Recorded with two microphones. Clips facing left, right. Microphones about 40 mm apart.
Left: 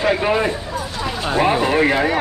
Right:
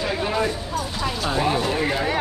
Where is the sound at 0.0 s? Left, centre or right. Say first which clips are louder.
Left 6 dB; left.